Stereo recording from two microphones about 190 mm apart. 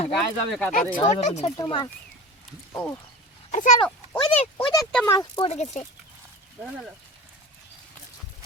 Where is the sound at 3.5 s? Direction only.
40° left (ahead or behind).